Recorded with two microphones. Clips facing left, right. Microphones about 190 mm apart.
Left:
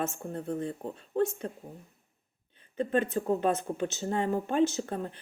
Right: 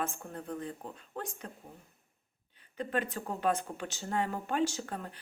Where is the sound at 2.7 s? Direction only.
25° left (ahead or behind).